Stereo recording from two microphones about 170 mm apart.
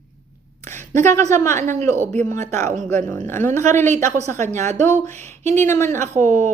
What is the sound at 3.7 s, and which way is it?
Speech, 45° right (ahead or behind).